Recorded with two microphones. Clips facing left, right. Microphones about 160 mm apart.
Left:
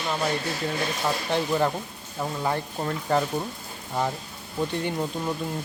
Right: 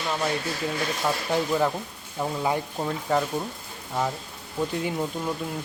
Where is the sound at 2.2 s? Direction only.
10° right (ahead or behind).